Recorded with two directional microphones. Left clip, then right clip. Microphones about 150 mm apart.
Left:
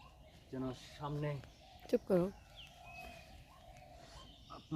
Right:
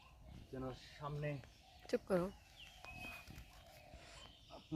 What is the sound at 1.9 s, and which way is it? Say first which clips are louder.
Speech: left 5 dB; 45° left (ahead or behind).